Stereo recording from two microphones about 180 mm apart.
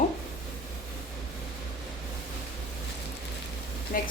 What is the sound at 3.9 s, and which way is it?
Speech, 50° left (ahead or behind).